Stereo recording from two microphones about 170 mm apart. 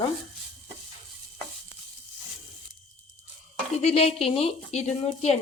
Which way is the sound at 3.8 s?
40° left (ahead or behind).